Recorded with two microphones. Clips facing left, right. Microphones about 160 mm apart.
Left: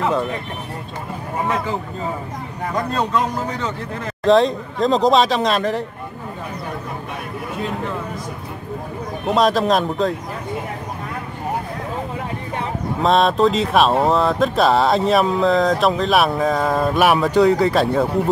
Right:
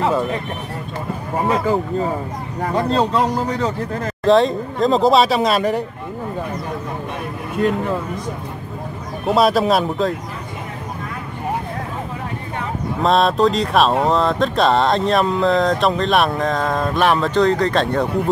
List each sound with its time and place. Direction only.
2.7 s speech: 30° right (ahead or behind)
4.2 s speech: centre (ahead or behind)
9.3 s speech: 5° right (ahead or behind)
13.0 s speech: centre (ahead or behind)